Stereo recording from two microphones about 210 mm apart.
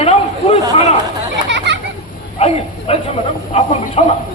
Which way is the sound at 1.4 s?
60° right (ahead or behind).